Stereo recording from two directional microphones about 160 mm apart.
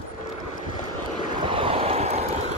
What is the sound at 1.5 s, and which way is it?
Vehicle, 35° right (ahead or behind).